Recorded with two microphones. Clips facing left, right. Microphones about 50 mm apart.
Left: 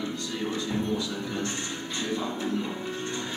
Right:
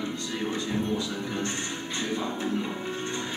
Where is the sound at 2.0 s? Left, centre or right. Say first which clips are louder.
Even; centre.